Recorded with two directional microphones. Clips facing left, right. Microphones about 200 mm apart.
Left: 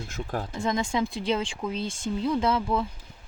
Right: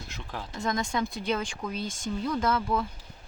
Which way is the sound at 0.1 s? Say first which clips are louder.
Left 8 dB; 45° left (ahead or behind).